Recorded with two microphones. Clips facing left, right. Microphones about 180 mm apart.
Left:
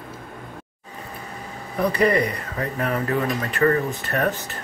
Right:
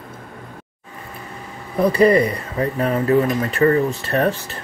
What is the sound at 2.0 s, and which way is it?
Speech, 25° right (ahead or behind).